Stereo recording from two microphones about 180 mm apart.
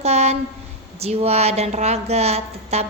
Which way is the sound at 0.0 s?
35° right (ahead or behind).